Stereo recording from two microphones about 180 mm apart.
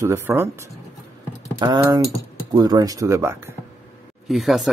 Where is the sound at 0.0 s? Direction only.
15° right (ahead or behind).